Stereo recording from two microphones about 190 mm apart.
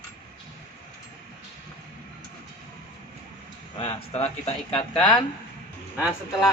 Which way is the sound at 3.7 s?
30° left (ahead or behind).